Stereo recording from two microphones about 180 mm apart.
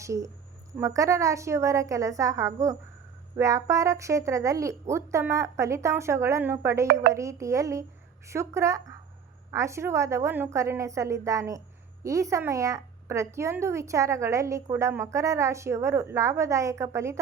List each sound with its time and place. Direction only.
0.0 s a woman's voice: 15° right (ahead or behind)